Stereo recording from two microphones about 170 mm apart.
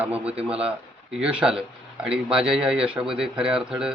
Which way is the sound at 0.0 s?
10° right (ahead or behind).